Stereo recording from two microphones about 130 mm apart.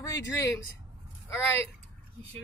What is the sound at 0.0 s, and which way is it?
A woman's voice, 25° left (ahead or behind).